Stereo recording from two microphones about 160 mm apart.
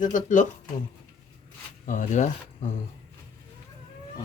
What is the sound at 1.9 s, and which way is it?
Speech, 55° left (ahead or behind).